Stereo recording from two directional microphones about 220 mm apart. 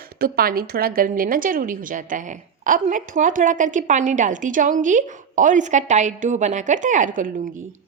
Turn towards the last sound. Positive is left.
turn(degrees=-35)  # may be behind; listen again after turning